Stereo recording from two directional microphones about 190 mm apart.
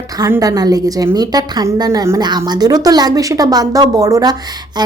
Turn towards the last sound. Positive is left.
turn(degrees=-20)  # may be behind; listen again after turning